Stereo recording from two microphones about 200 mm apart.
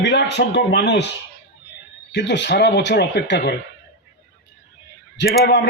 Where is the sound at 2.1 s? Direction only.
60° left (ahead or behind).